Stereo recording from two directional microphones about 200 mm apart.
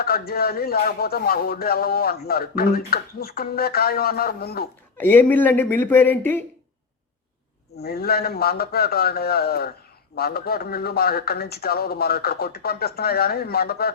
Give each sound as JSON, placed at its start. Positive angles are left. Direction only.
{"t": 0.0, "sound": "speech", "side_deg": 50}
{"t": 4.9, "sound": "speech", "side_deg": 10}
{"t": 7.8, "sound": "speech", "side_deg": 50}